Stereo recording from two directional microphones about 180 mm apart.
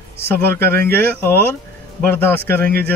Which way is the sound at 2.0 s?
10° left (ahead or behind).